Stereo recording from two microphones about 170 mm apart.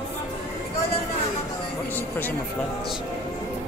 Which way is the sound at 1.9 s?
10° left (ahead or behind).